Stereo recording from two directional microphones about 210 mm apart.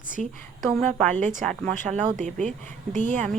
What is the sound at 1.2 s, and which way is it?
Speech, 35° right (ahead or behind).